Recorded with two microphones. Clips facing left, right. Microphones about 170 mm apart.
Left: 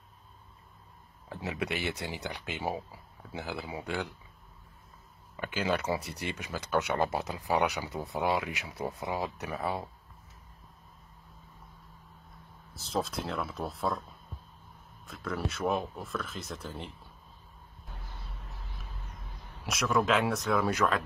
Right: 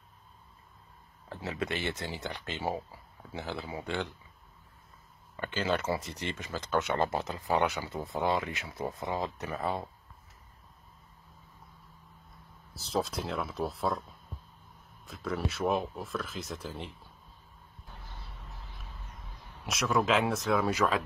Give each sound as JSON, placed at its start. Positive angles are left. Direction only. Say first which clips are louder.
{"t": 1.3, "sound": "speech", "louder": "even", "side_deg": 15}
{"t": 5.3, "sound": "speech", "louder": "even", "side_deg": 10}
{"t": 12.7, "sound": "speech", "louder": "right 1 dB", "side_deg": 0}
{"t": 15.0, "sound": "speech", "louder": "right 1 dB", "side_deg": 0}
{"t": 19.6, "sound": "speech", "louder": "even", "side_deg": 0}